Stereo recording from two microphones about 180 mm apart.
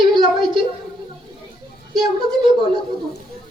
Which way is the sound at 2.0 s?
25° right (ahead or behind).